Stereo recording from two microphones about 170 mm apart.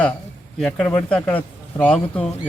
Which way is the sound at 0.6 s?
5° left (ahead or behind).